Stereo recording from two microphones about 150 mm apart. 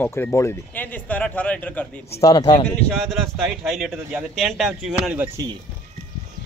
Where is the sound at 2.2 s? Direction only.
25° left (ahead or behind).